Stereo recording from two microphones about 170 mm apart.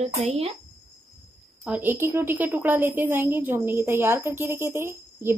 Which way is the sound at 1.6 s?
5° right (ahead or behind).